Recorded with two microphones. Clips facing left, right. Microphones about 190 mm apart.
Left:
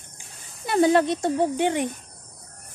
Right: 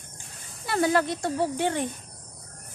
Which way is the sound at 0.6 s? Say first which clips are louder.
Left 5 dB; 20° left (ahead or behind).